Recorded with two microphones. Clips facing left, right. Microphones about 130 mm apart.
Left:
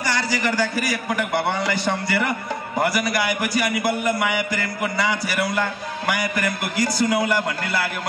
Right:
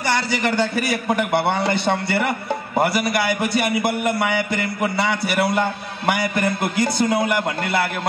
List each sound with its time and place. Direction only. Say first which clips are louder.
0.6 s a man's voice: right 2 dB; 25° right (ahead or behind)